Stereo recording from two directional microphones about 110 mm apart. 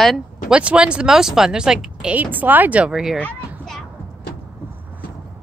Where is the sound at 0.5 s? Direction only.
10° right (ahead or behind).